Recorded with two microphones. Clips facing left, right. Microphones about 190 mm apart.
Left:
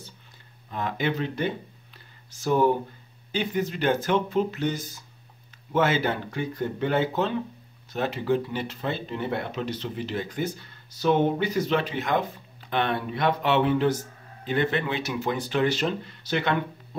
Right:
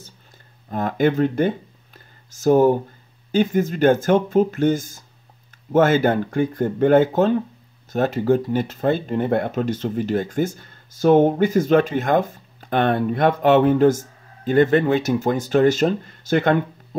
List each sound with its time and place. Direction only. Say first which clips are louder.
0.7 s speech: right 8 dB; 45° right (ahead or behind)